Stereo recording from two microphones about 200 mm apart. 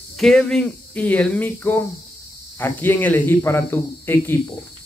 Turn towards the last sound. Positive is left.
turn(degrees=10)  # may be behind; listen again after turning